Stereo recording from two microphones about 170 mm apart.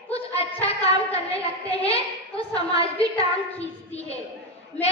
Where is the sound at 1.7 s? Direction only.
35° left (ahead or behind).